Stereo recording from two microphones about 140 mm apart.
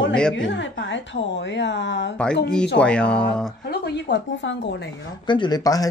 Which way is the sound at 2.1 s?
5° left (ahead or behind).